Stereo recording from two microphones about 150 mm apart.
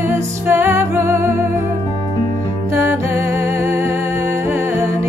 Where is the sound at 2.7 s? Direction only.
15° right (ahead or behind).